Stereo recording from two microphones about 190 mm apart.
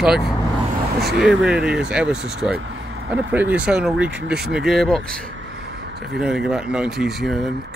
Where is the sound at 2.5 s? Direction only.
75° right (ahead or behind).